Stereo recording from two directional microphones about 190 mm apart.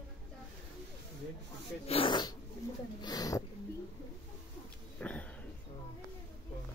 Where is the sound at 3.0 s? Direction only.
20° left (ahead or behind).